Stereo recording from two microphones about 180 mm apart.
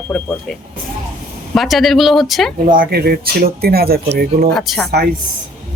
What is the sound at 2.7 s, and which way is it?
Speech, 55° right (ahead or behind).